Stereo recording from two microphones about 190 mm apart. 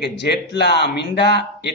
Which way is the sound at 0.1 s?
65° left (ahead or behind).